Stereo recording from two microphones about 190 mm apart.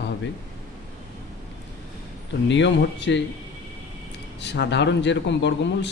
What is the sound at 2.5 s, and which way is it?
Speech, 70° left (ahead or behind).